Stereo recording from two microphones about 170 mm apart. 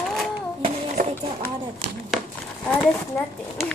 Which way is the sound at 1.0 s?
55° right (ahead or behind).